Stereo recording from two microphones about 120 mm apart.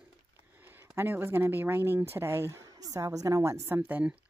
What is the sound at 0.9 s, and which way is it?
Speech, 20° right (ahead or behind).